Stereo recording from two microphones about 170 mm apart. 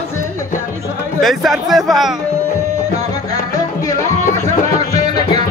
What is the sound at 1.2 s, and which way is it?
Speech, centre (ahead or behind).